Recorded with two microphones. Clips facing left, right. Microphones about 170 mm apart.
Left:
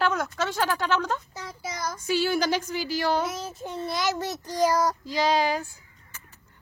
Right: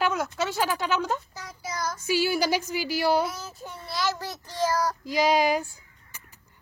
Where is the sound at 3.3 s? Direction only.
25° left (ahead or behind).